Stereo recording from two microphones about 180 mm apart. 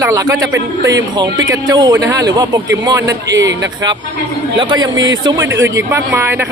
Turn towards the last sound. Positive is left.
turn(degrees=-20)  # may be behind; listen again after turning